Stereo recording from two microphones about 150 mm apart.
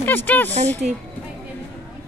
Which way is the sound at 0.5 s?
50° right (ahead or behind).